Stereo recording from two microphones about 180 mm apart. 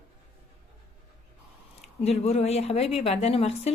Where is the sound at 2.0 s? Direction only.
35° left (ahead or behind).